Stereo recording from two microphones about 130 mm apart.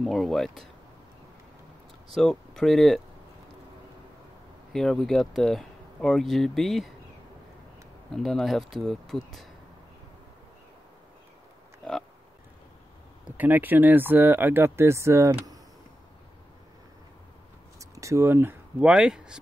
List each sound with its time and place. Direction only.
0.0 s speech: centre (ahead or behind)
2.1 s speech: 5° left (ahead or behind)
4.7 s speech: 5° left (ahead or behind)
8.1 s speech: centre (ahead or behind)
13.4 s speech: 15° right (ahead or behind)
17.7 s speech: 25° right (ahead or behind); by 19.3 s 5° right (ahead or behind)